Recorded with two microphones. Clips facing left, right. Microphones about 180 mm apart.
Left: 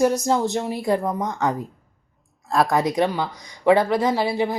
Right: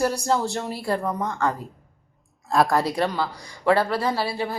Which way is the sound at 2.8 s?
15° left (ahead or behind).